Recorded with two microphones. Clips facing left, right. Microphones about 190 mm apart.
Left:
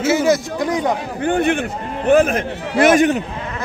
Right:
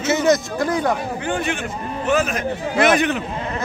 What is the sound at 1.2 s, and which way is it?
A man's voice, 55° left (ahead or behind).